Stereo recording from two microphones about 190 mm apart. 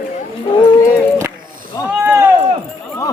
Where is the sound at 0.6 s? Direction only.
25° left (ahead or behind).